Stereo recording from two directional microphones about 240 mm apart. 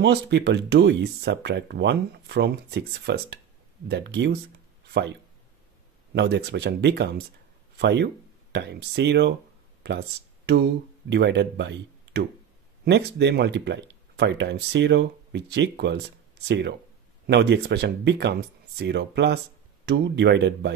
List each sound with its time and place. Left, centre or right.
0.0 s speech: right
6.1 s speech: right